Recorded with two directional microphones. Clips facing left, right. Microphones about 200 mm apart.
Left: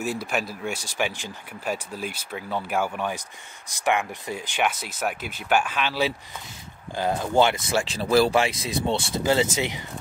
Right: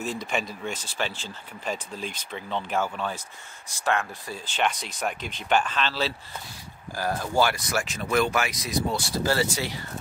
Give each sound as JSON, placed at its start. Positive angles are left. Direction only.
{"t": 0.0, "sound": "speech", "side_deg": 5}